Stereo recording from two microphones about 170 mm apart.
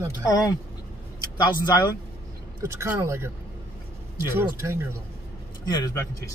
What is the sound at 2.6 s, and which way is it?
Speech, 15° right (ahead or behind).